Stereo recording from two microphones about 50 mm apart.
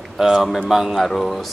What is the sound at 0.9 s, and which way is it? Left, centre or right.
Speech, centre.